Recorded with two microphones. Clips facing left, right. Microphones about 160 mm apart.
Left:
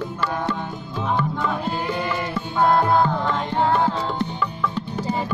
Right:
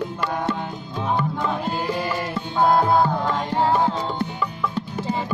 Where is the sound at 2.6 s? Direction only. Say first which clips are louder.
Even; 10° right (ahead or behind).